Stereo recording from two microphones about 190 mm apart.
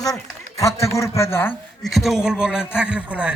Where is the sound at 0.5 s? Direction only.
15° left (ahead or behind).